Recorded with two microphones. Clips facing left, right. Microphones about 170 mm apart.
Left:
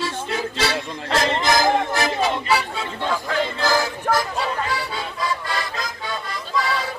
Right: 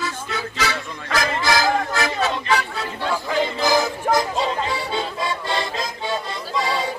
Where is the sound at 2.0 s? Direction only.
10° left (ahead or behind).